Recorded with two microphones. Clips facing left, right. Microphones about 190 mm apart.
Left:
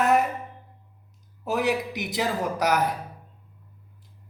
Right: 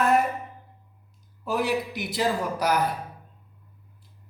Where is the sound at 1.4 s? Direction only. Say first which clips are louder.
Left 1 dB; 20° left (ahead or behind).